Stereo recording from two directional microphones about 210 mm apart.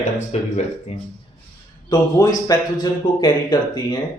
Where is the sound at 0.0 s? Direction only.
30° left (ahead or behind).